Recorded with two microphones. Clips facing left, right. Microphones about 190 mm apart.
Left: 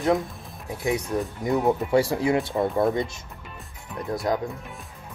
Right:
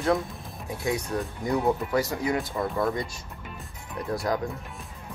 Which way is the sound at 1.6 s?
30° left (ahead or behind).